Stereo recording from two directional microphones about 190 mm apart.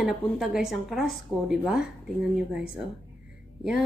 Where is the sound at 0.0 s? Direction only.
5° right (ahead or behind).